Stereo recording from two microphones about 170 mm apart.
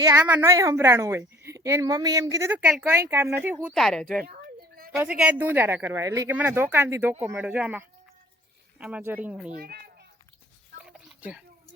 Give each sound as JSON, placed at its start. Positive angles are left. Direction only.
{"t": 0.0, "sound": "speech", "side_deg": -15}
{"t": 4.9, "sound": "speech", "side_deg": -5}
{"t": 9.6, "sound": "a child's voice", "side_deg": -65}
{"t": 10.8, "sound": "a sound", "side_deg": -5}